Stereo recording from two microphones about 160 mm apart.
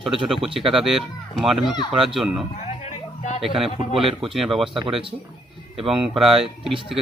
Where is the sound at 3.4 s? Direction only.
Centre (ahead or behind).